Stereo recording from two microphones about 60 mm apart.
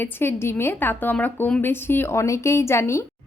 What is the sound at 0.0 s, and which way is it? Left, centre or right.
A woman's voice, left.